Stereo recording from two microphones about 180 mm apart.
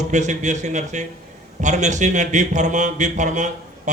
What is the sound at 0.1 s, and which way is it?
A man's voice, 40° right (ahead or behind).